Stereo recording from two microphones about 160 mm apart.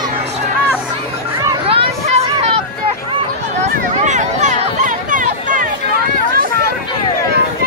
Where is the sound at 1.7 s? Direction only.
35° right (ahead or behind).